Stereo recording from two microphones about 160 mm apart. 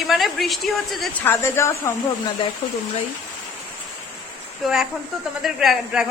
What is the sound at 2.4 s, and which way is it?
Speech, 30° left (ahead or behind).